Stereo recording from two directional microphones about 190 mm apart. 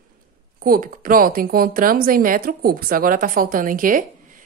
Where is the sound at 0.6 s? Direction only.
50° right (ahead or behind).